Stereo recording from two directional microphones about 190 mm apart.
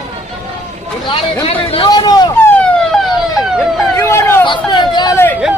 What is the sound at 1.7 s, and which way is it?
Vehicle, 25° left (ahead or behind).